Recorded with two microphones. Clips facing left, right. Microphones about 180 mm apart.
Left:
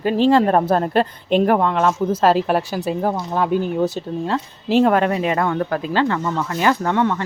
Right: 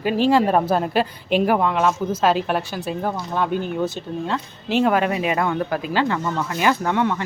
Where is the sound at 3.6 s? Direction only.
35° left (ahead or behind).